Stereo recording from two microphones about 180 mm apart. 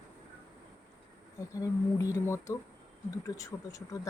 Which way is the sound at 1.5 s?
15° left (ahead or behind).